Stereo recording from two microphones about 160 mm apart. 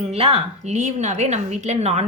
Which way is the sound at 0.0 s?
40° right (ahead or behind).